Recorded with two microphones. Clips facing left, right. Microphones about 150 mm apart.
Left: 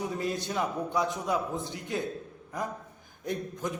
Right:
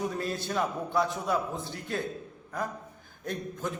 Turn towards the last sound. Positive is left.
turn(degrees=15)  # may be behind; listen again after turning